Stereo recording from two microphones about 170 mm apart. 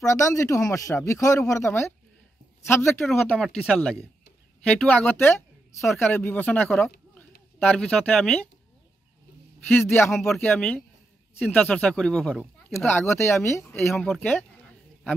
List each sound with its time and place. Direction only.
0.0 s speech: 15° left (ahead or behind)
3.1 s speech: centre (ahead or behind)
9.7 s speech: 10° left (ahead or behind)